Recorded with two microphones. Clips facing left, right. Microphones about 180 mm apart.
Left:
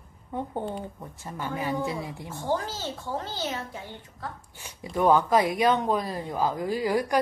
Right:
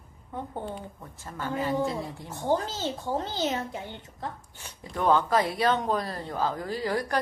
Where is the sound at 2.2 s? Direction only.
20° right (ahead or behind).